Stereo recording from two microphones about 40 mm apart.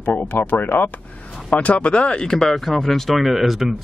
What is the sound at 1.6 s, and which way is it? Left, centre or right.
Speech, left.